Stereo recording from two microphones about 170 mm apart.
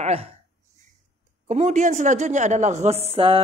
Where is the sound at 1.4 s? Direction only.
45° right (ahead or behind).